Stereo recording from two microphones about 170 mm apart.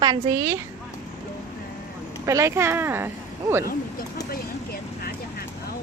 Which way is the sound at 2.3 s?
15° right (ahead or behind).